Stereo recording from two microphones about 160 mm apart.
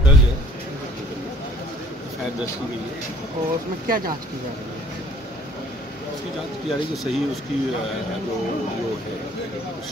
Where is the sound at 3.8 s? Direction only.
65° right (ahead or behind).